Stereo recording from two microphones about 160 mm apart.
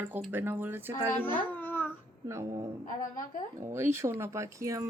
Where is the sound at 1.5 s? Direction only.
10° left (ahead or behind).